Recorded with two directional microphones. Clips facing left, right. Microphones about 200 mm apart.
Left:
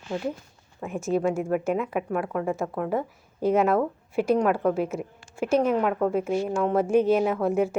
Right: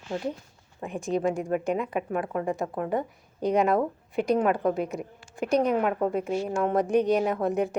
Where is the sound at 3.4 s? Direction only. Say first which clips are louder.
Left 2 dB; 5° left (ahead or behind).